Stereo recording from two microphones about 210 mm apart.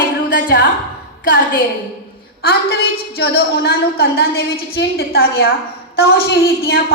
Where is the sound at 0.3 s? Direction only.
50° left (ahead or behind).